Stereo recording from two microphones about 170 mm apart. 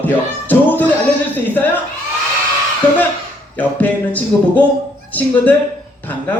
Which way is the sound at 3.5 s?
10° left (ahead or behind).